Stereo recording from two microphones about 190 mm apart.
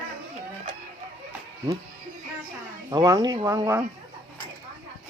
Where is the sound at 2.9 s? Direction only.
20° right (ahead or behind).